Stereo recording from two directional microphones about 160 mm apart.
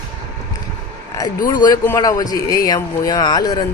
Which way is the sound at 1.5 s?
25° left (ahead or behind).